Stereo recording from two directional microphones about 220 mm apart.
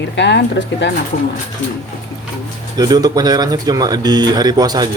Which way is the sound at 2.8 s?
15° right (ahead or behind).